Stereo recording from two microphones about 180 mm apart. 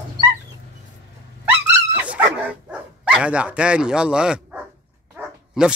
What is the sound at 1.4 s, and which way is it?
Dog, 10° right (ahead or behind).